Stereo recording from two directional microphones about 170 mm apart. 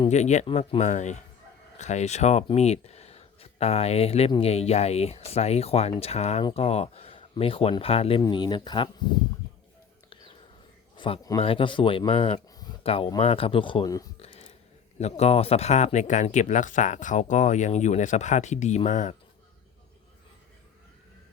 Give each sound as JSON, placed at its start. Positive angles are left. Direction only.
{"t": 0.1, "sound": "speech", "side_deg": 40}
{"t": 8.2, "sound": "speech", "side_deg": 25}
{"t": 10.9, "sound": "a man's voice", "side_deg": 30}
{"t": 14.2, "sound": "a sound", "side_deg": 35}
{"t": 14.9, "sound": "speech", "side_deg": 40}